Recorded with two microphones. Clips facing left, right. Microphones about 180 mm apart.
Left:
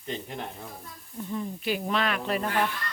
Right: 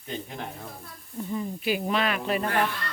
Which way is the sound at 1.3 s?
5° right (ahead or behind).